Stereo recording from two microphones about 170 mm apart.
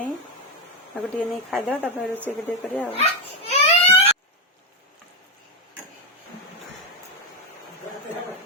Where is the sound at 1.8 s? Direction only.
10° right (ahead or behind).